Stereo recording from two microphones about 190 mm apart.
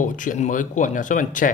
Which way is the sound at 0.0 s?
45° left (ahead or behind).